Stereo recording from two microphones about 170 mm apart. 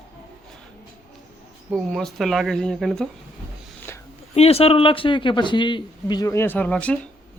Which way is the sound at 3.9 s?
15° left (ahead or behind).